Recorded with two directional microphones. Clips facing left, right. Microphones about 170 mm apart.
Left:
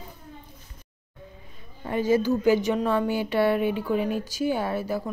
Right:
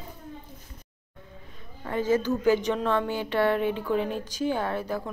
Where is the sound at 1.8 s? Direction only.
15° left (ahead or behind).